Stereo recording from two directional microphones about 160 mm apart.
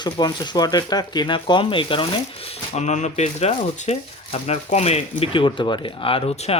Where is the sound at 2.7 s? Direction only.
45° left (ahead or behind).